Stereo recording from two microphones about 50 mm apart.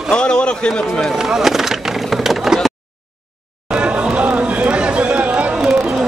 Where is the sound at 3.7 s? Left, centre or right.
Right.